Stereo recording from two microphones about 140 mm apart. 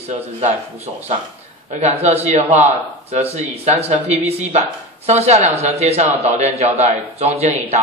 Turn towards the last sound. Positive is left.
turn(degrees=-45)  # may be behind; listen again after turning